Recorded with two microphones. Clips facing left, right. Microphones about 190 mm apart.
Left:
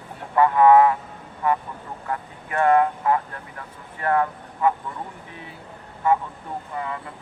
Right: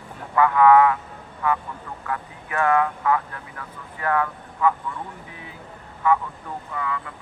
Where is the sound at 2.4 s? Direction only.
35° left (ahead or behind).